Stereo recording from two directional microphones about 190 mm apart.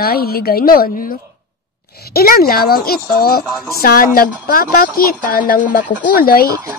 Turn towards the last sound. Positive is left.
turn(degrees=50)  # may be behind; listen again after turning